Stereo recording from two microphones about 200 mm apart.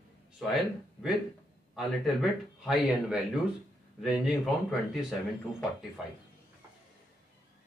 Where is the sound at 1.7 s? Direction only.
Centre (ahead or behind).